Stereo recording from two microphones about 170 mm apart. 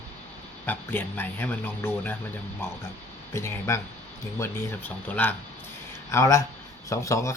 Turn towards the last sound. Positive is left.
turn(degrees=20)  # may be behind; listen again after turning